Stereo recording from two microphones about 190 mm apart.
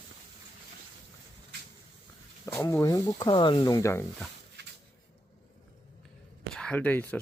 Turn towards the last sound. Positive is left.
turn(degrees=10)  # may be behind; listen again after turning